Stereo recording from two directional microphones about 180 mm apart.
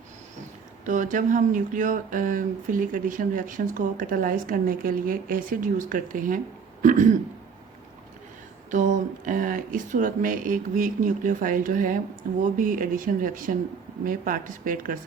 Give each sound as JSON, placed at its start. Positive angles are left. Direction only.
{"t": 0.9, "sound": "speech", "side_deg": -45}
{"t": 8.7, "sound": "speech", "side_deg": -45}